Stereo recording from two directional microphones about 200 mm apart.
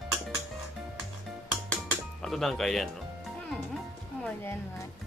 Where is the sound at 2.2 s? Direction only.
Centre (ahead or behind).